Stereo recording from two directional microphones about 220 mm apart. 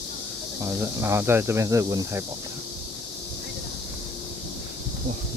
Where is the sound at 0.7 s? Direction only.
10° right (ahead or behind).